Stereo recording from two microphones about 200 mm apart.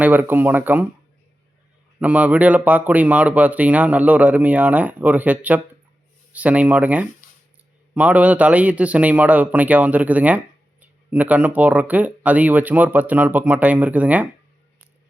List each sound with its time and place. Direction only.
0.0 s a man's voice: 10° right (ahead or behind)
2.0 s a man's voice: 5° right (ahead or behind)